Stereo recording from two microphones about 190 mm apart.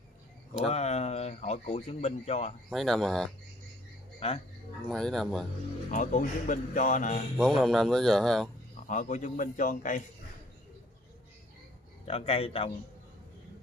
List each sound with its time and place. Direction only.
0.7 s speech: 35° left (ahead or behind)
2.7 s speech: centre (ahead or behind)
4.2 s a man's voice: 30° left (ahead or behind)
4.8 s speech: centre (ahead or behind)
5.9 s speech: 40° left (ahead or behind)
7.3 s speech: centre (ahead or behind)
8.7 s a man's voice: 40° left (ahead or behind)
12.1 s a man's voice: 30° left (ahead or behind)